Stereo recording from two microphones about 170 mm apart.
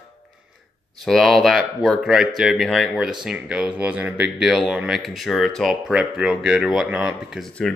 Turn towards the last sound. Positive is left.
turn(degrees=0)  # may be behind; listen again after turning